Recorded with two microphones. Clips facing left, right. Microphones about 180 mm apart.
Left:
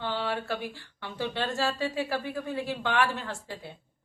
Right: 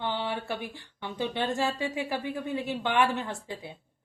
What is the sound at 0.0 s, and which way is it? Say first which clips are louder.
Speech: even; 20° right (ahead or behind).